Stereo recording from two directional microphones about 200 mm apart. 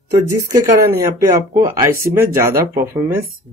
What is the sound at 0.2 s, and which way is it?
Speech, 15° right (ahead or behind).